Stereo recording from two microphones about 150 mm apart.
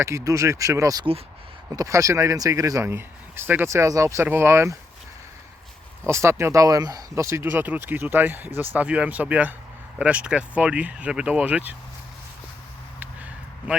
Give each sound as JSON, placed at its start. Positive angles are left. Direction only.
{"t": 0.0, "sound": "speech", "side_deg": -20}
{"t": 6.1, "sound": "speech", "side_deg": -20}